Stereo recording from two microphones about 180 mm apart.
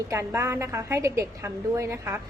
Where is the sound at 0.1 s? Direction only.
15° right (ahead or behind).